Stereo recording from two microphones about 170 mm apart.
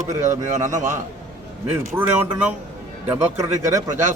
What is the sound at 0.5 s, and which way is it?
Speech, 45° right (ahead or behind).